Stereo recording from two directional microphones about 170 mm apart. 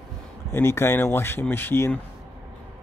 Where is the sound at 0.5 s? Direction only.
15° left (ahead or behind).